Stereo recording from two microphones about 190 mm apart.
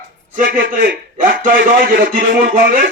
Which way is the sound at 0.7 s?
45° right (ahead or behind).